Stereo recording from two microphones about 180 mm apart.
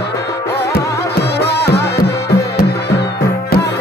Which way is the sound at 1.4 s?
65° left (ahead or behind).